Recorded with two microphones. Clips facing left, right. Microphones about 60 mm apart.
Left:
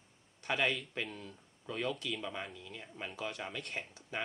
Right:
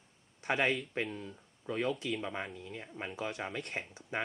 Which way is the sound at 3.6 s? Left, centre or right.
Right.